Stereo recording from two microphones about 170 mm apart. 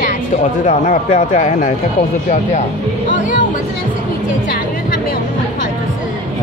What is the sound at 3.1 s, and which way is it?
Speech, 50° left (ahead or behind).